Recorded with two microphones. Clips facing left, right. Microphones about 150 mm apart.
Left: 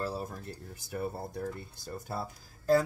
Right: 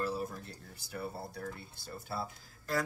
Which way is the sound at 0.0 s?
35° left (ahead or behind).